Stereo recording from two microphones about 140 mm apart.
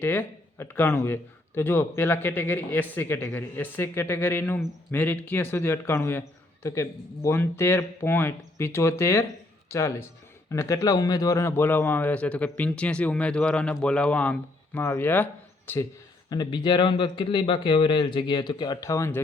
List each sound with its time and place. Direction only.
0.0 s a man's voice: 10° left (ahead or behind)
16.3 s speech: 30° left (ahead or behind)